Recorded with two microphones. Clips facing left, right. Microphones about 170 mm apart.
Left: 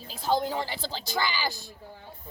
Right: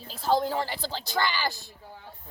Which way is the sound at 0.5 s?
20° left (ahead or behind).